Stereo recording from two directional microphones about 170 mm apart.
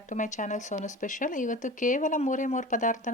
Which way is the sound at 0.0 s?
45° left (ahead or behind).